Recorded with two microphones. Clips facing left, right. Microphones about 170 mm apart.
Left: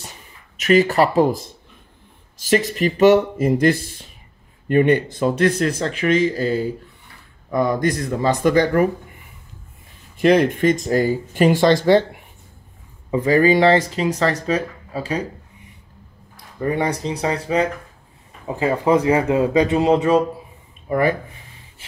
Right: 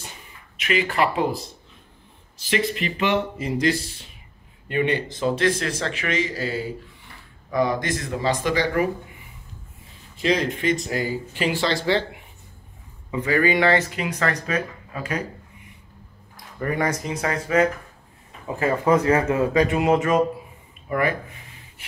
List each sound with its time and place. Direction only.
0.6 s speech: 40° left (ahead or behind)
10.1 s speech: 55° left (ahead or behind)
13.1 s speech: 35° left (ahead or behind)
16.5 s speech: 20° left (ahead or behind)
19.5 s speech: 30° left (ahead or behind)